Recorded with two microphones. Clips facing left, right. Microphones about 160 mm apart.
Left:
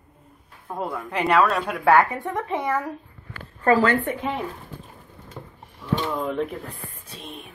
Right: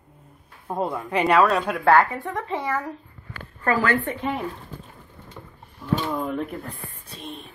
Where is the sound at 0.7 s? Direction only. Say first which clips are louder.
Right 3 dB; 20° right (ahead or behind).